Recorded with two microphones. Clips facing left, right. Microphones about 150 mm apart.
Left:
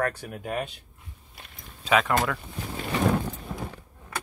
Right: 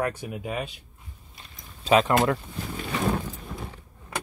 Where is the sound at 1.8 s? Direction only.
35° right (ahead or behind).